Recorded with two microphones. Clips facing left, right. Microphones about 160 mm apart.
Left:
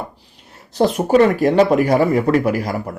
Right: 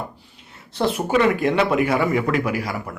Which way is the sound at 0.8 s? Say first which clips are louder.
Left 6 dB; 40° left (ahead or behind).